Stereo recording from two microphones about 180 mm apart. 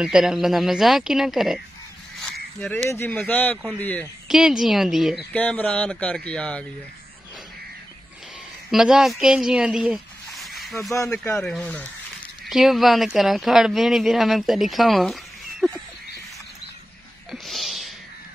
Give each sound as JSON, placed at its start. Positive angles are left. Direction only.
{"t": 0.0, "sound": "speech", "side_deg": -5}
{"t": 2.6, "sound": "speech", "side_deg": 5}
{"t": 4.3, "sound": "speech", "side_deg": 0}
{"t": 8.6, "sound": "speech", "side_deg": 0}
{"t": 10.9, "sound": "speech", "side_deg": 15}
{"t": 11.4, "sound": "speech", "side_deg": 5}
{"t": 15.6, "sound": "a sound", "side_deg": 0}
{"t": 17.3, "sound": "a sound", "side_deg": 0}